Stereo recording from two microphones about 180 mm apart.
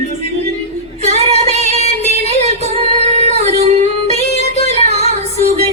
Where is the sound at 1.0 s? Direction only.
40° right (ahead or behind).